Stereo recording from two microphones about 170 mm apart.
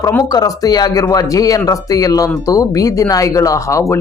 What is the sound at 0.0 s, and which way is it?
Speech, 10° left (ahead or behind).